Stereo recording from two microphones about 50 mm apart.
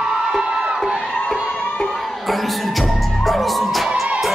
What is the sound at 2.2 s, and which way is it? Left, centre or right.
Music, centre.